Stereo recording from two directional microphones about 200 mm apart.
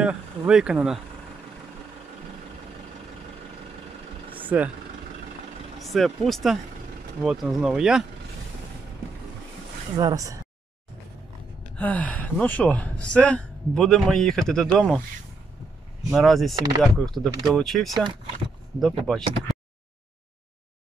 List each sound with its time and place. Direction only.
0.0 s speech: 5° right (ahead or behind)
4.4 s vehicle: 10° right (ahead or behind)
5.8 s speech: centre (ahead or behind)
9.9 s speech: 20° right (ahead or behind)
11.7 s speech: 5° left (ahead or behind)
16.1 s speech: centre (ahead or behind)
16.5 s speech: 20° right (ahead or behind)
17.1 s speech: centre (ahead or behind)